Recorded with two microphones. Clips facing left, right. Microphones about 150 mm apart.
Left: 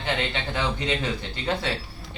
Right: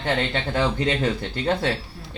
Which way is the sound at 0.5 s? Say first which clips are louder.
Right 5 dB; 45° right (ahead or behind).